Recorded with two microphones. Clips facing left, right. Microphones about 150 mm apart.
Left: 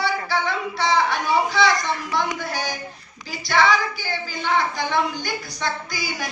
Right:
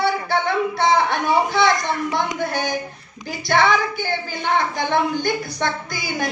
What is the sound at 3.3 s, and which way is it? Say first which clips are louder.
Speech: right 2 dB; 50° right (ahead or behind).